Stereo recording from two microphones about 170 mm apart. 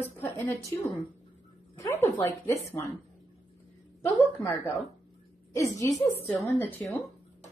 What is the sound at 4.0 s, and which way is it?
A woman's voice, 15° left (ahead or behind).